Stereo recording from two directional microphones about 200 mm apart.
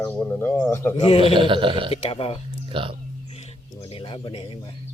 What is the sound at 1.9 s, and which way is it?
Speech, 30° left (ahead or behind).